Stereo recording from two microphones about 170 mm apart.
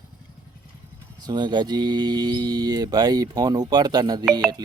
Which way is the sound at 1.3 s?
25° right (ahead or behind).